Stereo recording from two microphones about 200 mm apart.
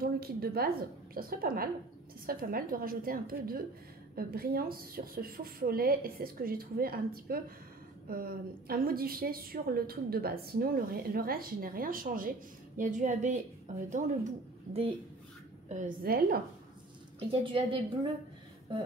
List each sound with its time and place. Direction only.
0.0 s a woman's voice: 50° right (ahead or behind); by 14.9 s 35° right (ahead or behind)
15.7 s a woman's voice: 50° right (ahead or behind)
17.2 s a woman's voice: 25° right (ahead or behind)